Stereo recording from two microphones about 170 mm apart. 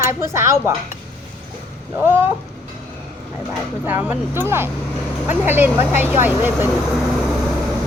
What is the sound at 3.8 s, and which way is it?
Speech, 10° right (ahead or behind).